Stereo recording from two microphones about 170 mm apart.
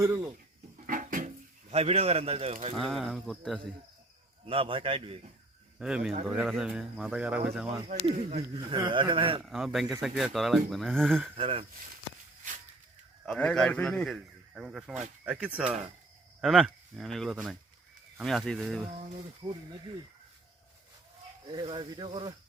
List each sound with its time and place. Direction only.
0.0 s speech: 15° right (ahead or behind)
0.9 s a sound: 50° right (ahead or behind)
1.7 s a man's voice: 35° right (ahead or behind)
2.7 s speech: centre (ahead or behind)
4.4 s a man's voice: 35° right (ahead or behind)
5.8 s speech: 5° right (ahead or behind)
8.1 s a man's voice: 40° right (ahead or behind)
8.7 s speech: 30° right (ahead or behind)
9.4 s speech: centre (ahead or behind)
11.3 s a man's voice: 30° right (ahead or behind)
13.2 s speech: 5° left (ahead or behind)
19.4 s speech: 30° right (ahead or behind)
21.4 s speech: 25° right (ahead or behind)